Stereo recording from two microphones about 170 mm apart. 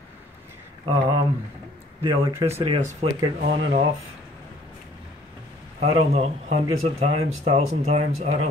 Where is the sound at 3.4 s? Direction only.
60° right (ahead or behind).